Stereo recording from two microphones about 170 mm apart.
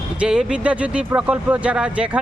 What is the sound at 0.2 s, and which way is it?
Speech, 5° right (ahead or behind).